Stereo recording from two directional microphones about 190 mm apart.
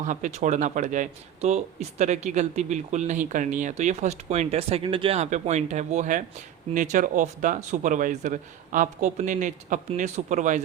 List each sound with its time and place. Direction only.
0.0 s speech: 40° right (ahead or behind)